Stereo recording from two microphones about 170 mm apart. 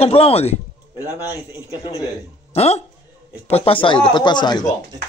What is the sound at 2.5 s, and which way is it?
Speech, 35° left (ahead or behind).